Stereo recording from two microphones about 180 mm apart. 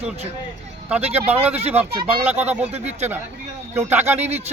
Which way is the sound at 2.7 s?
40° right (ahead or behind).